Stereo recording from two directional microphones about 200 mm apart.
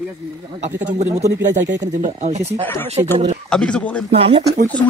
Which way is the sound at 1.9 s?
35° right (ahead or behind).